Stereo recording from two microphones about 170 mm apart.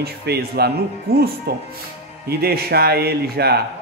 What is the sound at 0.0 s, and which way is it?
A man's voice, 70° right (ahead or behind).